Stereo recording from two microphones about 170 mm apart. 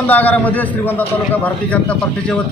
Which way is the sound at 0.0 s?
10° left (ahead or behind).